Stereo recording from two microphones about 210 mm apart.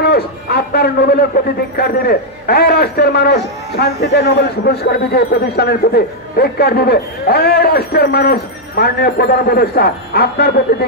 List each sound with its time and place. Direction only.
0.0 s a man's voice: 50° left (ahead or behind)